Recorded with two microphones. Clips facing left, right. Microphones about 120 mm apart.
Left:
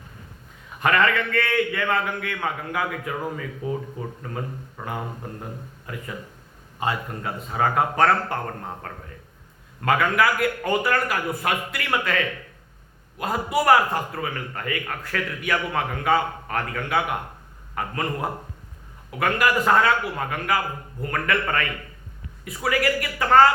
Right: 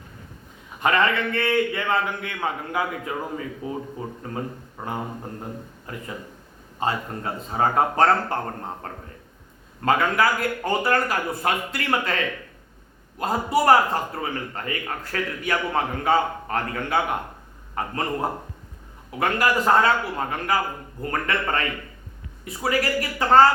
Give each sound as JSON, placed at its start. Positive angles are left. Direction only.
{"t": 0.8, "sound": "a man's voice", "side_deg": -25}
{"t": 4.8, "sound": "a man's voice", "side_deg": -35}